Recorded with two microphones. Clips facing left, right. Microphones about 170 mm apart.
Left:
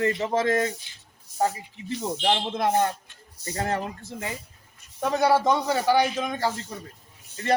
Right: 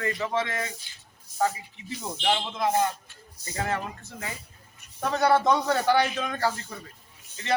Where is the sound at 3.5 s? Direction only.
40° left (ahead or behind).